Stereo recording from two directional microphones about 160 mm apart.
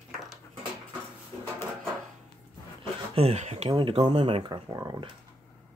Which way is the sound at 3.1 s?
40° right (ahead or behind).